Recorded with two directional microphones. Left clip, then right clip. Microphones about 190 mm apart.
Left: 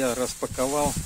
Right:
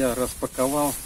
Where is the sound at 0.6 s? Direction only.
20° left (ahead or behind).